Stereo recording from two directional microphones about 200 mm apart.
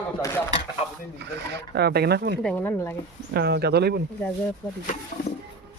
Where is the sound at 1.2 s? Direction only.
55° right (ahead or behind).